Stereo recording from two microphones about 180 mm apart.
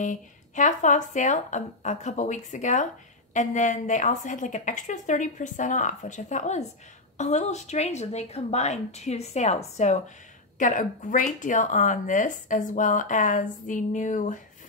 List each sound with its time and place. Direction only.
0.0 s a woman's voice: 45° left (ahead or behind)